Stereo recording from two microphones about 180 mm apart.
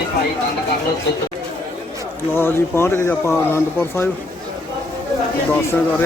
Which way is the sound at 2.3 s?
15° left (ahead or behind).